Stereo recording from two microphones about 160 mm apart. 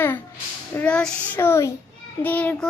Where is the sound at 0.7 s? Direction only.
10° left (ahead or behind).